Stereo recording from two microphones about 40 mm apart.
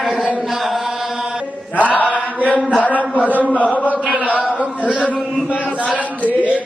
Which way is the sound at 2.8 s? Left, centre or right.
Left.